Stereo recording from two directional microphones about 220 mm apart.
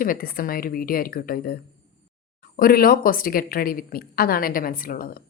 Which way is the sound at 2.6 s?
40° left (ahead or behind).